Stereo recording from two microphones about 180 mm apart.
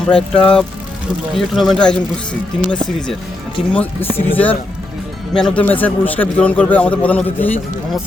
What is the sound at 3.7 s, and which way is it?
A man's voice, 10° left (ahead or behind).